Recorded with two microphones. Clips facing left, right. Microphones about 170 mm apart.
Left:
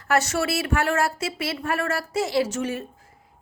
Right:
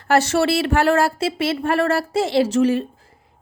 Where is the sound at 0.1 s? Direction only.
30° right (ahead or behind).